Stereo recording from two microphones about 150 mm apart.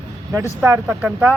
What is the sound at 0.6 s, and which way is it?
Speech, 10° right (ahead or behind).